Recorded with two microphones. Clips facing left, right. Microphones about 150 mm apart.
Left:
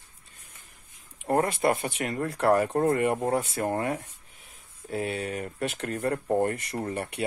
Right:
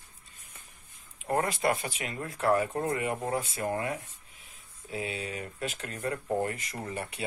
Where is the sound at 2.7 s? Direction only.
50° left (ahead or behind).